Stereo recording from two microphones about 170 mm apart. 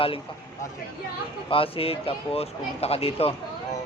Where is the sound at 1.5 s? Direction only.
35° left (ahead or behind).